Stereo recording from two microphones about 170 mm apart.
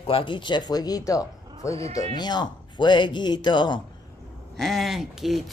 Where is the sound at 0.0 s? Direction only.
30° left (ahead or behind).